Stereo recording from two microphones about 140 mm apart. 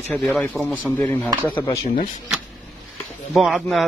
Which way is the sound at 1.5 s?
30° left (ahead or behind).